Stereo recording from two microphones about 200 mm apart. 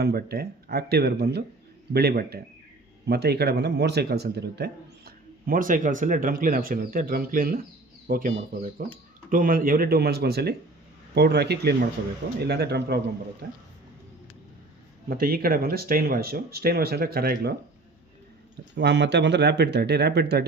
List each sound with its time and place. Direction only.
0.0 s speech: 50° right (ahead or behind)
15.1 s speech: 50° right (ahead or behind)
18.8 s speech: 60° right (ahead or behind)